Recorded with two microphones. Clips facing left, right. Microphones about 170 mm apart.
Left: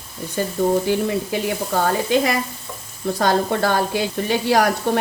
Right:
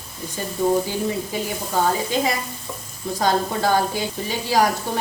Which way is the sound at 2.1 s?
65° left (ahead or behind).